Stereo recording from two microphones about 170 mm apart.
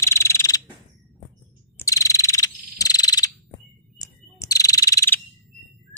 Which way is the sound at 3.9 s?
20° left (ahead or behind).